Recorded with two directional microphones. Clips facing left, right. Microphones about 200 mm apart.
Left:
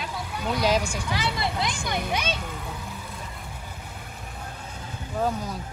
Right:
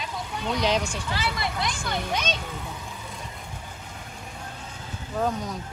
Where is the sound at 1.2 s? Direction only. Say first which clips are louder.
Left 1 dB; 25° left (ahead or behind).